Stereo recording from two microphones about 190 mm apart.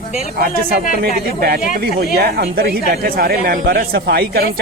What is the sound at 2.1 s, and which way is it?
Speech, 55° right (ahead or behind).